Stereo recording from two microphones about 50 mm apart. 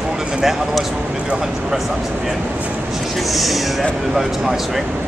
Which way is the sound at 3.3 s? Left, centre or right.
Centre.